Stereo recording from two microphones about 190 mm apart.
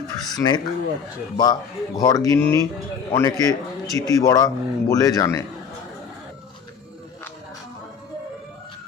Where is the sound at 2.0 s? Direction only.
20° left (ahead or behind).